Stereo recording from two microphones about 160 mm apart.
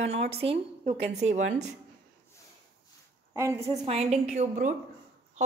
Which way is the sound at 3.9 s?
40° right (ahead or behind).